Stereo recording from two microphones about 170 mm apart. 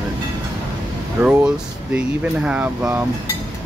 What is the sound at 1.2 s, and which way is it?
Speech, 10° right (ahead or behind).